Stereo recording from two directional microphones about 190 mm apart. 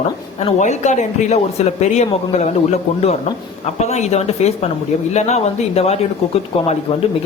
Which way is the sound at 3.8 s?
35° left (ahead or behind).